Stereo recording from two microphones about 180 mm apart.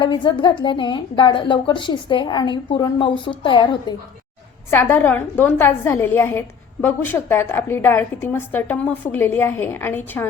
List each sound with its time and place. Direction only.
0.0 s a woman's voice: 25° left (ahead or behind)
4.7 s a woman's voice: 10° left (ahead or behind)